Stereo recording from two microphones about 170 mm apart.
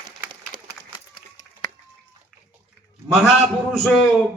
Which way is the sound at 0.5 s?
25° right (ahead or behind).